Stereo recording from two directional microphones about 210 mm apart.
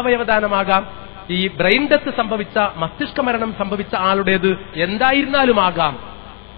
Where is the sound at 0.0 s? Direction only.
20° left (ahead or behind).